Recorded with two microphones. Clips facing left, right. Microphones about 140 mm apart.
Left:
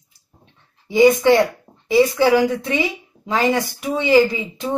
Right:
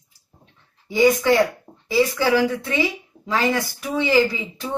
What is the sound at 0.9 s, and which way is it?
Speech, 20° left (ahead or behind).